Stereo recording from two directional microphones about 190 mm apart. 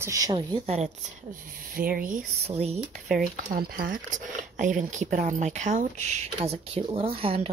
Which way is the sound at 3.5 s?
50° right (ahead or behind).